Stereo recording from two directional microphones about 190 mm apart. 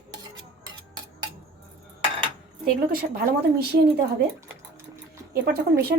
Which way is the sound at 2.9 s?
50° right (ahead or behind).